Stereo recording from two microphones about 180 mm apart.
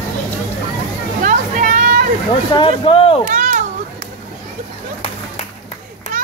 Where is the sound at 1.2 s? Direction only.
50° right (ahead or behind).